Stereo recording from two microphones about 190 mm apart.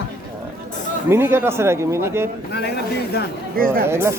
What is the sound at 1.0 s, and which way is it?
Speech, 15° right (ahead or behind).